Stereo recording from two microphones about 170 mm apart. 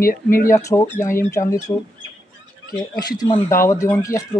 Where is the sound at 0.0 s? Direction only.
55° left (ahead or behind).